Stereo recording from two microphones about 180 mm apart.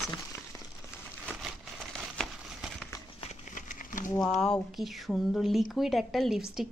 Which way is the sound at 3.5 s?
45° left (ahead or behind).